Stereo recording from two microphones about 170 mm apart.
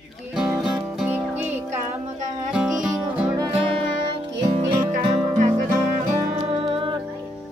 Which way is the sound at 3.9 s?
30° right (ahead or behind).